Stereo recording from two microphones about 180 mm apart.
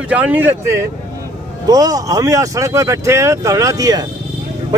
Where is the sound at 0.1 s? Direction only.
10° right (ahead or behind).